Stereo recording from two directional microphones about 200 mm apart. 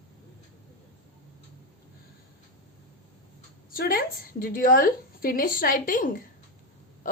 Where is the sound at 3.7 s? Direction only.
50° left (ahead or behind).